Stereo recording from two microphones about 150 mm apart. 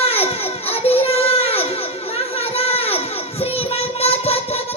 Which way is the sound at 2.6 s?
40° left (ahead or behind).